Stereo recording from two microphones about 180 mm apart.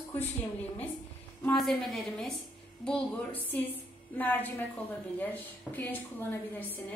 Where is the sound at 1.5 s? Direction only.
Centre (ahead or behind).